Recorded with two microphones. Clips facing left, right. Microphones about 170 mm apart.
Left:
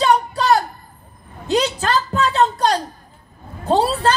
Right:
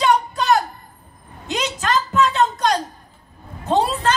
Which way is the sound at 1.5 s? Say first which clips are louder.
Left 4 dB; 35° left (ahead or behind).